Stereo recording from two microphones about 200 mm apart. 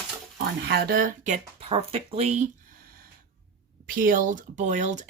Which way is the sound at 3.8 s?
45° right (ahead or behind).